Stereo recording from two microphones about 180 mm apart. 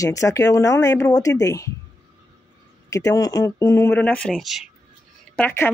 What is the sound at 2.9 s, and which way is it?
Speech, 20° left (ahead or behind).